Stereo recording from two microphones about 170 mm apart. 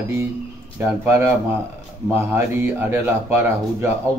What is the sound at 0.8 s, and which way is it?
A man's voice, 15° right (ahead or behind).